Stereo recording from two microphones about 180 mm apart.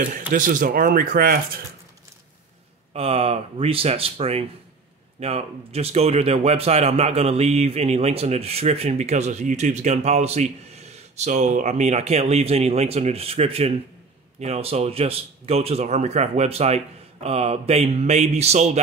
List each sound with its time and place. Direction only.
0.3 s speech: 50° right (ahead or behind)
2.9 s speech: 35° right (ahead or behind)